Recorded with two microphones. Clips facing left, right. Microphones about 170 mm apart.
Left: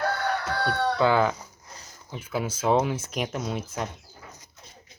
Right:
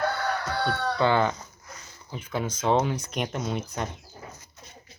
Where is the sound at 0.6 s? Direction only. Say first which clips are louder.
Left 2 dB; 5° left (ahead or behind).